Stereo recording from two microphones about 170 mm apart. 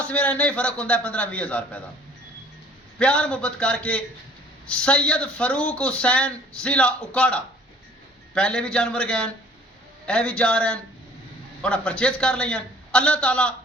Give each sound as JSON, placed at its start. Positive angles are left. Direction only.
{"t": 0.0, "sound": "speech", "side_deg": 5}
{"t": 3.0, "sound": "speech", "side_deg": 5}